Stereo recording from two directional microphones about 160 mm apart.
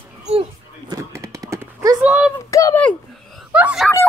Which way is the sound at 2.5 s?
20° left (ahead or behind).